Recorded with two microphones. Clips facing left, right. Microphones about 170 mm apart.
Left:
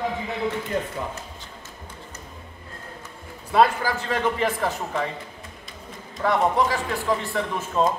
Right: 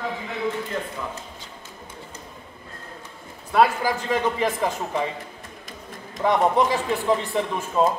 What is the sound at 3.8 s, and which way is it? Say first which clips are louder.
A man's voice: right 1 dB; 15° right (ahead or behind).